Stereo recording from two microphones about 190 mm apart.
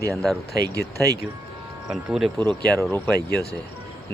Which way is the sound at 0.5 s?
20° right (ahead or behind).